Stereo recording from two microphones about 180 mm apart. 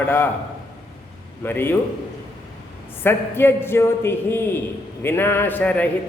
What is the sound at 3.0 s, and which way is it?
A man's voice, 10° left (ahead or behind).